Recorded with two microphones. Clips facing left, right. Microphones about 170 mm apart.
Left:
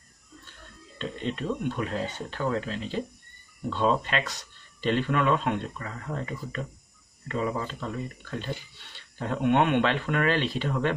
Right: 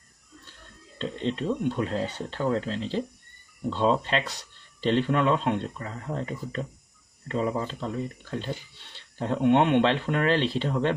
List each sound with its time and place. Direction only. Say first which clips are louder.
0.9 s speech: right 3 dB; 25° right (ahead or behind)